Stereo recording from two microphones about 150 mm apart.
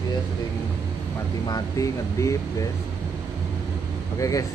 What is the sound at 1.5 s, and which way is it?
Speech, 20° left (ahead or behind).